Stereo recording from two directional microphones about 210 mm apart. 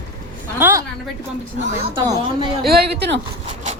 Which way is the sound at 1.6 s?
35° right (ahead or behind).